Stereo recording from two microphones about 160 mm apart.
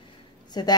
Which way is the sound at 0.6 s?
25° left (ahead or behind).